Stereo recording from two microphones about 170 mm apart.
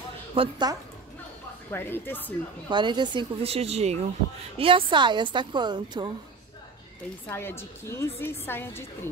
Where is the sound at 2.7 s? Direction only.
25° right (ahead or behind).